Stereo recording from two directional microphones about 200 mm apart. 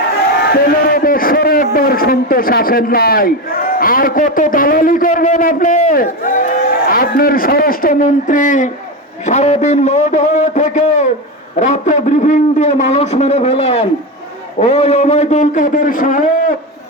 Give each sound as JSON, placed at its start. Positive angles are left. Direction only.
{"t": 0.5, "sound": "a man's voice", "side_deg": 45}